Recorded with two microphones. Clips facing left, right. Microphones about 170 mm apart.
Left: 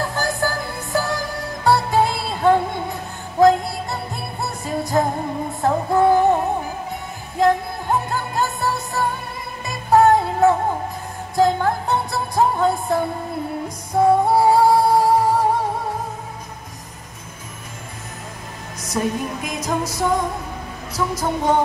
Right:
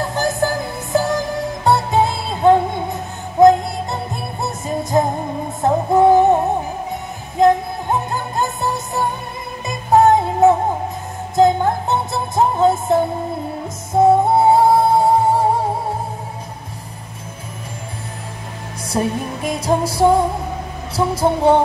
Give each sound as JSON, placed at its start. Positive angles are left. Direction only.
{"t": 0.0, "sound": "music", "side_deg": -20}
{"t": 18.9, "sound": "music", "side_deg": -30}
{"t": 20.9, "sound": "a sound", "side_deg": -30}